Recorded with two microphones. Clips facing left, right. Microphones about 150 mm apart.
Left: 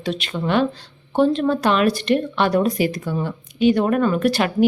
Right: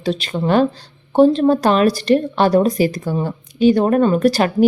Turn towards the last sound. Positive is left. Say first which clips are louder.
# right 4 dB
turn(degrees=-40)  # may be behind; listen again after turning